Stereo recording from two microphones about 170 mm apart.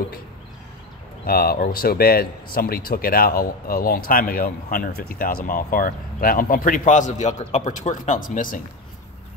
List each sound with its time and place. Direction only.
1.2 s speech: 60° left (ahead or behind)